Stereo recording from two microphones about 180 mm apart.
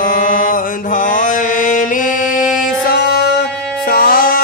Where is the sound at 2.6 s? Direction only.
60° left (ahead or behind).